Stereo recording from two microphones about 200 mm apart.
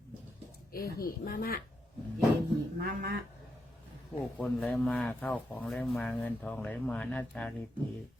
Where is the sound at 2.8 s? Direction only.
50° right (ahead or behind).